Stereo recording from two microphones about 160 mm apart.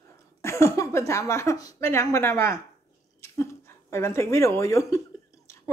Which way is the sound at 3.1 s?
15° left (ahead or behind).